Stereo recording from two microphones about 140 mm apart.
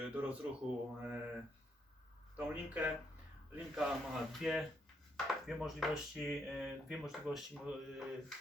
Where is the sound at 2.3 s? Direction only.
10° right (ahead or behind).